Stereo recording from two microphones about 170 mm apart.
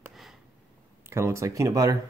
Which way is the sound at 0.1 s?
Centre (ahead or behind).